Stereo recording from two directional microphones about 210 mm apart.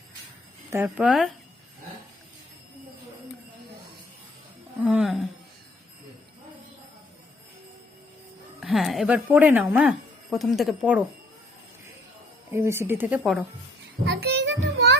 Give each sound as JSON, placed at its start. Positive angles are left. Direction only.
{"t": 0.7, "sound": "a woman's voice", "side_deg": -10}
{"t": 4.8, "sound": "a woman's voice", "side_deg": -5}
{"t": 8.6, "sound": "a woman's voice", "side_deg": 0}
{"t": 12.5, "sound": "speech", "side_deg": -10}
{"t": 14.0, "sound": "music", "side_deg": -55}